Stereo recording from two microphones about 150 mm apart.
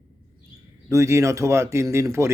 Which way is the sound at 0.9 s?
20° right (ahead or behind).